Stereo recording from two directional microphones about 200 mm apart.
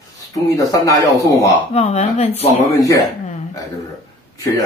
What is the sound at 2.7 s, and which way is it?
Speech, 15° left (ahead or behind).